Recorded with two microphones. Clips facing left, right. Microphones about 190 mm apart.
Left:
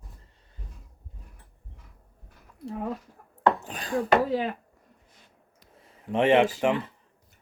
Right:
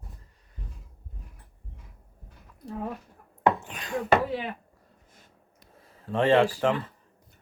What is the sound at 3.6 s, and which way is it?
Speech, 35° left (ahead or behind).